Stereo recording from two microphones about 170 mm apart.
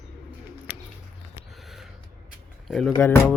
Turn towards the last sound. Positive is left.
turn(degrees=15)  # may be behind; listen again after turning